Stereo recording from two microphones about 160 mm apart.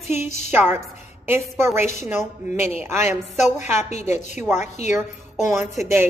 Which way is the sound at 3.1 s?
45° left (ahead or behind).